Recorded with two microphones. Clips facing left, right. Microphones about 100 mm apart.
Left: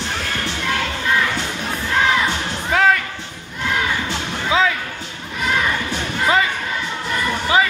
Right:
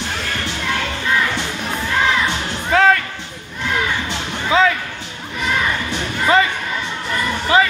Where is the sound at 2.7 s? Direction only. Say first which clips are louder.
Right 2 dB; 5° left (ahead or behind).